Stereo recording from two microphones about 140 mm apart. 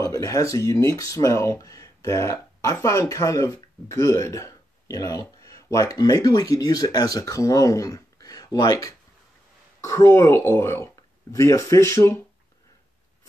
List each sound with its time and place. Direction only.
0.0 s speech: 25° left (ahead or behind)